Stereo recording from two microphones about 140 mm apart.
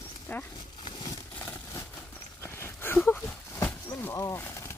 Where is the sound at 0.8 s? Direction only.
30° left (ahead or behind).